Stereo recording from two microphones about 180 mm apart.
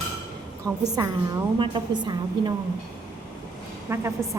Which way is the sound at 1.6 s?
25° right (ahead or behind).